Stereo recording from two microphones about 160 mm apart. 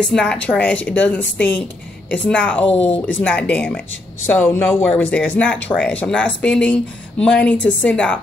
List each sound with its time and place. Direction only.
0.0 s speech: 5° left (ahead or behind)
2.7 s speech: 40° left (ahead or behind)
3.1 s speech: 10° left (ahead or behind)